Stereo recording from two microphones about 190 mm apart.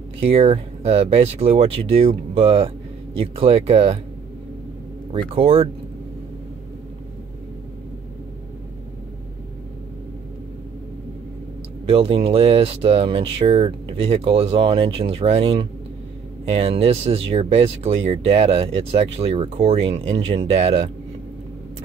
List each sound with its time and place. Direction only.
0.2 s speech: 30° right (ahead or behind)
5.3 s speech: 30° right (ahead or behind)
11.9 s speech: 30° right (ahead or behind)